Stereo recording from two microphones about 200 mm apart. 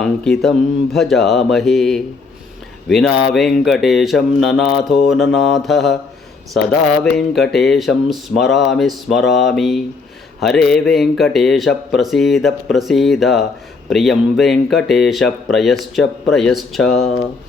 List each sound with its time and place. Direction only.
0.0 s speech: centre (ahead or behind)
7.0 s speech: centre (ahead or behind)